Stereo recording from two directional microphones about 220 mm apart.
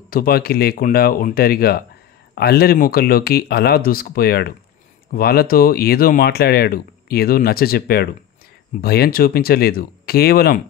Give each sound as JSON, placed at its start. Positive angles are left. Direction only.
{"t": 0.1, "sound": "speech", "side_deg": 40}